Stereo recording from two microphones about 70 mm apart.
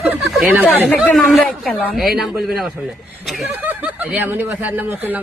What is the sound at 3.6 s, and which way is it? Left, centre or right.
Speech, right.